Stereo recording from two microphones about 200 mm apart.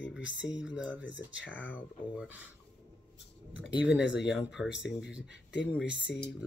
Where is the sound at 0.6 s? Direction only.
5° right (ahead or behind).